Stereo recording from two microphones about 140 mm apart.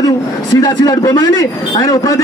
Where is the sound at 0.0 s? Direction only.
25° left (ahead or behind).